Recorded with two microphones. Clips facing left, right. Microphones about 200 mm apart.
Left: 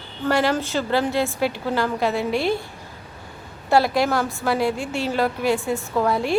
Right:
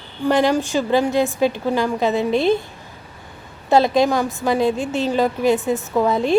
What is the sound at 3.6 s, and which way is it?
A woman's voice, 20° right (ahead or behind).